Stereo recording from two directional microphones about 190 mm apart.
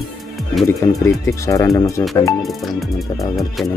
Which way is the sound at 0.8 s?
15° left (ahead or behind).